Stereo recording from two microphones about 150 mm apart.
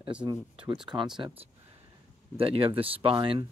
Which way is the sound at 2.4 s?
40° right (ahead or behind).